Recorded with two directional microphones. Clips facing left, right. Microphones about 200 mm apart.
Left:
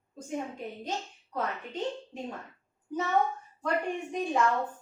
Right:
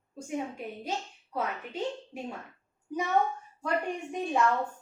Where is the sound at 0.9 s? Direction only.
10° right (ahead or behind).